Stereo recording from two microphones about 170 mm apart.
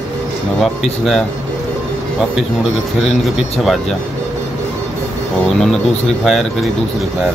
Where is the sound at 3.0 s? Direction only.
Centre (ahead or behind).